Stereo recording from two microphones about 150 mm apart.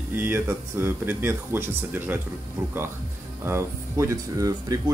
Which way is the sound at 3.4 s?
20° right (ahead or behind).